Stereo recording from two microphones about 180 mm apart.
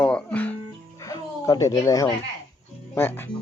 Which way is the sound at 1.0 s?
20° left (ahead or behind).